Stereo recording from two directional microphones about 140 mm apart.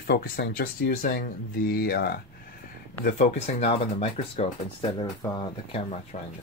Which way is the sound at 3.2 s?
50° left (ahead or behind).